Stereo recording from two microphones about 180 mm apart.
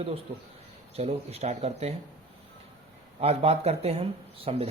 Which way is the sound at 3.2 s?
35° right (ahead or behind).